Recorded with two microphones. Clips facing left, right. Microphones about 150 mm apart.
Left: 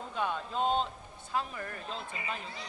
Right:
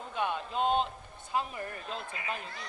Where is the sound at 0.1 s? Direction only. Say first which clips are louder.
Right 1 dB; 10° right (ahead or behind).